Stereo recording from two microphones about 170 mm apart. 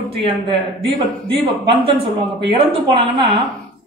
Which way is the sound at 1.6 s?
30° right (ahead or behind).